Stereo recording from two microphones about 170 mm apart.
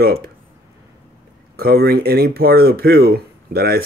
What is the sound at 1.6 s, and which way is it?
Speech, 65° right (ahead or behind).